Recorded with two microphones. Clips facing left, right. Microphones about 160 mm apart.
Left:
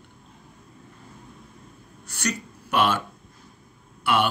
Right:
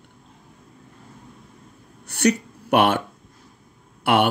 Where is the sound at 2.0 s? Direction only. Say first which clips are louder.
Right 10 dB; 60° right (ahead or behind).